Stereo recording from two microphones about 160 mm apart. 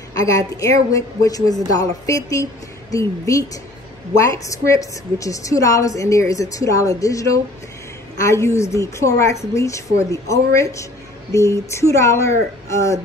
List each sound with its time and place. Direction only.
0.1 s a woman's voice: 20° left (ahead or behind)